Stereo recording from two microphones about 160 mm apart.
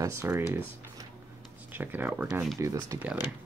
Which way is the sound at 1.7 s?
10° right (ahead or behind).